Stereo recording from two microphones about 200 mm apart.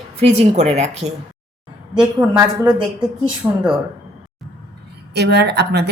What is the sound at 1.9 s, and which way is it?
Speech, 20° right (ahead or behind).